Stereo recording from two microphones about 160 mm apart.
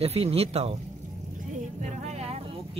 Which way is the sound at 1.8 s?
45° right (ahead or behind).